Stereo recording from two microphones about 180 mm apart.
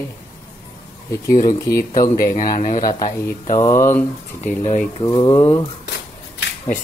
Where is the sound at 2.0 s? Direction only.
45° left (ahead or behind).